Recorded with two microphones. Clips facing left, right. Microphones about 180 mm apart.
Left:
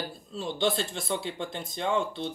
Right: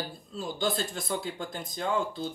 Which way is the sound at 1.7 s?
5° right (ahead or behind).